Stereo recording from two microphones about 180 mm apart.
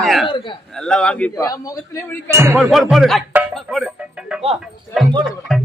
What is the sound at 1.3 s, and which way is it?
Speech, 20° left (ahead or behind).